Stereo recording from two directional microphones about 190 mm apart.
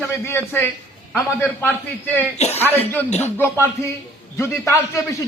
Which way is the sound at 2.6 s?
10° left (ahead or behind).